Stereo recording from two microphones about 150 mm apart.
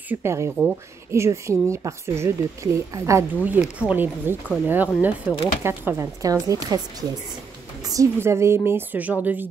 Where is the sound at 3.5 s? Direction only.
10° right (ahead or behind).